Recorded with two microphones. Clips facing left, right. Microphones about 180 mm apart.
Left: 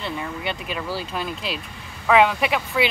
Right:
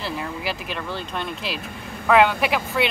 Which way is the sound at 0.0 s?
Centre (ahead or behind).